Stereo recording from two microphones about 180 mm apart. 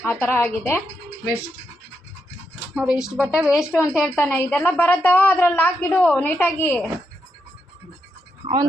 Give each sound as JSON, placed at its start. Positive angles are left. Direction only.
{"t": 0.0, "sound": "a woman's voice", "side_deg": 10}
{"t": 2.7, "sound": "speech", "side_deg": -5}
{"t": 4.2, "sound": "a woman's voice", "side_deg": 10}
{"t": 8.4, "sound": "a sound", "side_deg": -35}